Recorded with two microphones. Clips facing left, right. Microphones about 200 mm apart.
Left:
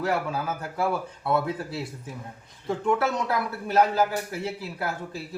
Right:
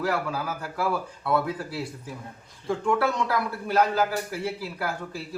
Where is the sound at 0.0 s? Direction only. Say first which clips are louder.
Left 1 dB; 25° left (ahead or behind).